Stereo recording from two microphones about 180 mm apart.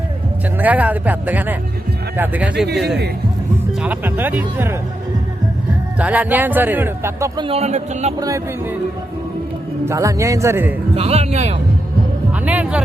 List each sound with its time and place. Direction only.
0.6 s speech: 10° right (ahead or behind)
2.6 s speech: 65° right (ahead or behind)
3.8 s speech: 10° right (ahead or behind)
6.0 s speech: 10° right (ahead or behind)
7.4 s a man's voice: 35° right (ahead or behind)
9.8 s speech: 15° right (ahead or behind)
10.9 s a man's voice: 35° right (ahead or behind)
12.5 s speech: 10° right (ahead or behind)